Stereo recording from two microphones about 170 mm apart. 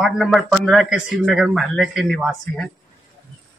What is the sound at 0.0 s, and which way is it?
Speech, 5° right (ahead or behind).